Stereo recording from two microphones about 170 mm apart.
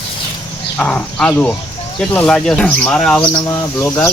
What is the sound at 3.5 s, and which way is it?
Speech, 15° left (ahead or behind).